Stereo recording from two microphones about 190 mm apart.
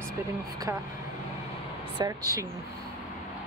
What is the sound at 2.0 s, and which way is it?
Speech, 20° right (ahead or behind).